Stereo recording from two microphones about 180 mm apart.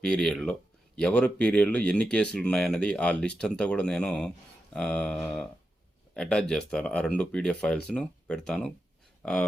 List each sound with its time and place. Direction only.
0.0 s speech: 5° left (ahead or behind)